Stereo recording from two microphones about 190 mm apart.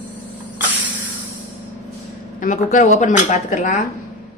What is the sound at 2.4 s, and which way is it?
A woman's voice, 40° left (ahead or behind).